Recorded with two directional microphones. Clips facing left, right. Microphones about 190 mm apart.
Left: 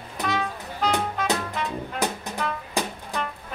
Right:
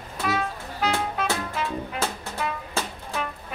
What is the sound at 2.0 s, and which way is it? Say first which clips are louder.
Music: left 5 dB; 15° left (ahead or behind).